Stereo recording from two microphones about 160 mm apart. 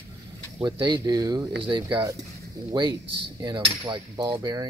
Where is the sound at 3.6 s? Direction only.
30° right (ahead or behind).